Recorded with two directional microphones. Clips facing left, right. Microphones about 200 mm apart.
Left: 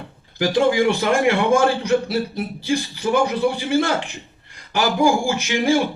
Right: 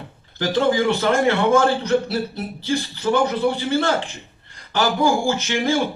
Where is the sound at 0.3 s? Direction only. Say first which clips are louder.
Left 2 dB; 15° left (ahead or behind).